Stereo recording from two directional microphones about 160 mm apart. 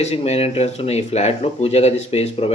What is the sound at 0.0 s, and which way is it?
Speech, 40° left (ahead or behind).